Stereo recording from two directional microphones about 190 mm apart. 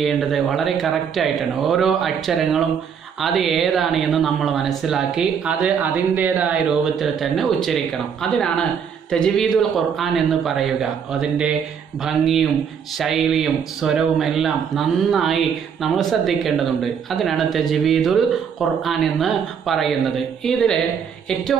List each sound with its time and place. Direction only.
0.0 s speech: centre (ahead or behind)